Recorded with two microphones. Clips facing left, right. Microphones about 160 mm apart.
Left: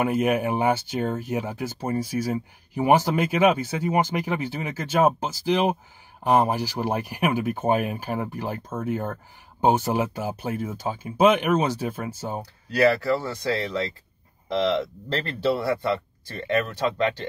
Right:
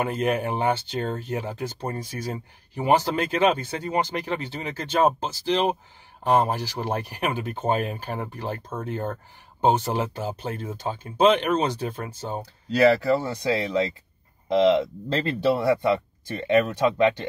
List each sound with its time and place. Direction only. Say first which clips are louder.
0.0 s speech: left 2 dB; 10° left (ahead or behind)
13.0 s speech: right 2 dB; 20° right (ahead or behind)